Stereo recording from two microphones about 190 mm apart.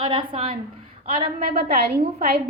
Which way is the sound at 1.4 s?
50° right (ahead or behind).